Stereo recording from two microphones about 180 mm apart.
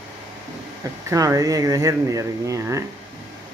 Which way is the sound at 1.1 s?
20° right (ahead or behind).